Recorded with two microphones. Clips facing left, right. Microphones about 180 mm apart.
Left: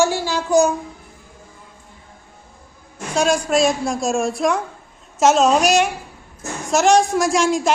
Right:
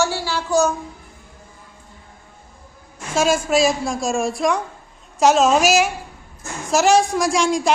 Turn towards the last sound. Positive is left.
turn(degrees=0)  # may be behind; listen again after turning